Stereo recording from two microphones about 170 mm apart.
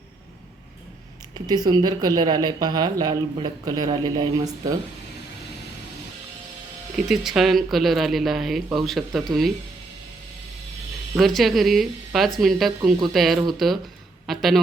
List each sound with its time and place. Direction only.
1.3 s speech: 25° right (ahead or behind)
6.9 s speech: centre (ahead or behind)
11.2 s speech: centre (ahead or behind)